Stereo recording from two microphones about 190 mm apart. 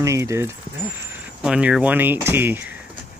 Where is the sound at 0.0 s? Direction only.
15° right (ahead or behind).